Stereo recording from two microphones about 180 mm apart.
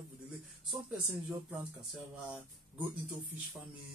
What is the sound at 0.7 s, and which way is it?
Speech, centre (ahead or behind).